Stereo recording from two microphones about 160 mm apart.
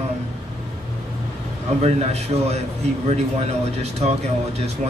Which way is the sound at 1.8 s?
40° right (ahead or behind).